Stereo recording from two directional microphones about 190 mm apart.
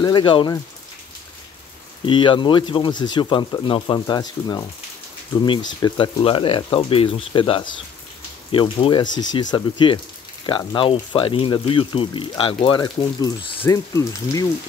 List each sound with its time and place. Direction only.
0.0 s speech: 25° left (ahead or behind)
2.0 s speech: 25° left (ahead or behind)